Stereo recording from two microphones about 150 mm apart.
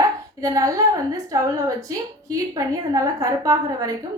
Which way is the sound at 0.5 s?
25° right (ahead or behind).